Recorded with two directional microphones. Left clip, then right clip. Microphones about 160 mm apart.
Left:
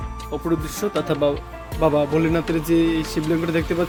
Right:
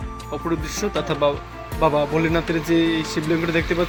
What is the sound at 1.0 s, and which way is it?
Speech, 45° left (ahead or behind).